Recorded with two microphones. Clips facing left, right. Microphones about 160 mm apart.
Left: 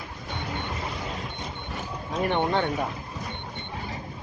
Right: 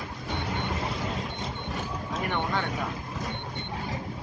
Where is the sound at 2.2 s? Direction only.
30° left (ahead or behind).